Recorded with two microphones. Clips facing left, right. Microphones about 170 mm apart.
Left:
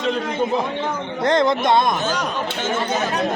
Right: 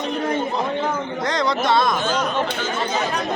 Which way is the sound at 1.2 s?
55° left (ahead or behind).